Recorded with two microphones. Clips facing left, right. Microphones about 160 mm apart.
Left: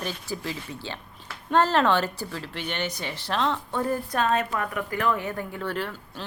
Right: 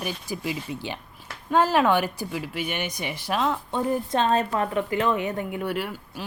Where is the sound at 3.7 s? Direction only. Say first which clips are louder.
Right 2 dB; 20° right (ahead or behind).